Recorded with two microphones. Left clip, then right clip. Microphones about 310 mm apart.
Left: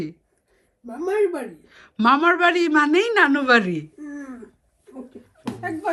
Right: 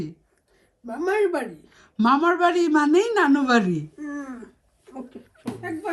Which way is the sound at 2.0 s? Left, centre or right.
Centre.